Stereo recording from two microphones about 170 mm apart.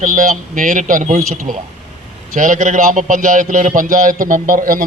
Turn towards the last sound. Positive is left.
turn(degrees=-55)  # may be behind; listen again after turning